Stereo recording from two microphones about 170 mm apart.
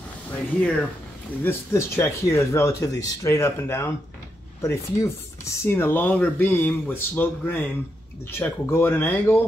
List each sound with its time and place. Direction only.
0.6 s speech: 5° left (ahead or behind)